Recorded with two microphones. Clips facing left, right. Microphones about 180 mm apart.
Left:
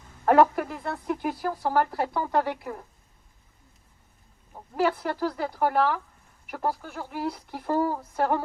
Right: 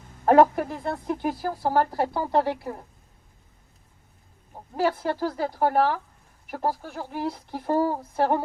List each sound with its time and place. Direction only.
0.3 s speech: 25° right (ahead or behind)
4.5 s speech: 25° right (ahead or behind)